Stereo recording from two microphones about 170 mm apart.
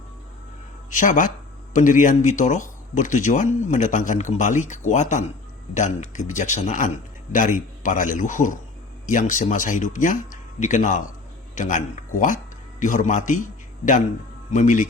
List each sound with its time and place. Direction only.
0.9 s a man's voice: 50° left (ahead or behind)
12.8 s a man's voice: 45° left (ahead or behind)